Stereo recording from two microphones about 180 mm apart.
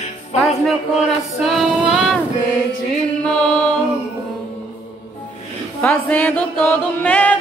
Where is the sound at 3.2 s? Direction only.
5° left (ahead or behind).